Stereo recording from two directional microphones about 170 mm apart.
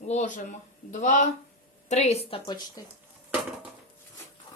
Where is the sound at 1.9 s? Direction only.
40° left (ahead or behind).